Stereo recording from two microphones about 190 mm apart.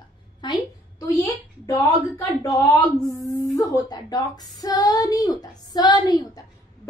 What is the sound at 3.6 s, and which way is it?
A woman's voice, 20° left (ahead or behind).